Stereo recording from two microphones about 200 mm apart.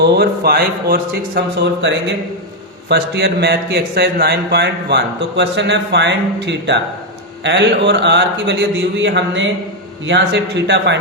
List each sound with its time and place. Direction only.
0.0 s speech: 55° right (ahead or behind)